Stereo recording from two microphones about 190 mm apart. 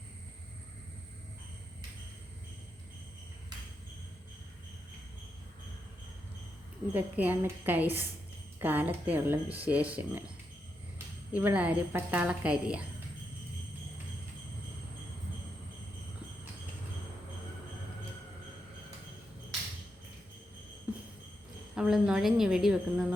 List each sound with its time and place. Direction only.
6.9 s a woman's voice: 10° right (ahead or behind)
20.9 s jingle bell: 5° right (ahead or behind)
21.8 s a woman's voice: 5° right (ahead or behind)